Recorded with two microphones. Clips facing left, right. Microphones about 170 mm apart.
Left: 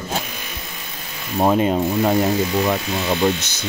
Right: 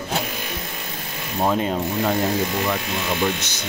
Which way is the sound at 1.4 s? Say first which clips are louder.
Left 5 dB; 20° left (ahead or behind).